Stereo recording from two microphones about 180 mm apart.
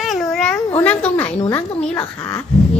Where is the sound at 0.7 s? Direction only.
10° left (ahead or behind).